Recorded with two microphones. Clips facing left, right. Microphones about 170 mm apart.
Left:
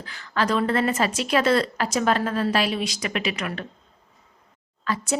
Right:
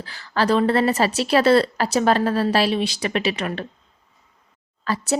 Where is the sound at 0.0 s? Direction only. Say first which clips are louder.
Right 3 dB; 35° right (ahead or behind).